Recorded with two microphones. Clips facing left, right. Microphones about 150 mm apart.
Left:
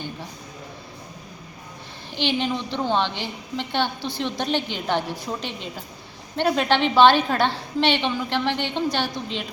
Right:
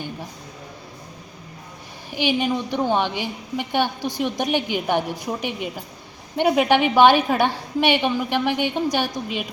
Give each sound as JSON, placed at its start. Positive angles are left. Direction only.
{"t": 2.0, "sound": "a woman's voice", "side_deg": -10}